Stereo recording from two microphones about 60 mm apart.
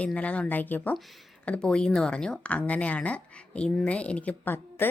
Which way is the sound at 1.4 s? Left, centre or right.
Centre.